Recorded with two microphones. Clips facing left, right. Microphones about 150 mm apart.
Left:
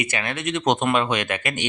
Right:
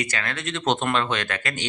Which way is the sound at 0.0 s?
20° left (ahead or behind).